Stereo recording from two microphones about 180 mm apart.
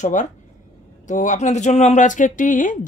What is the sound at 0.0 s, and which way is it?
Speech, 45° left (ahead or behind).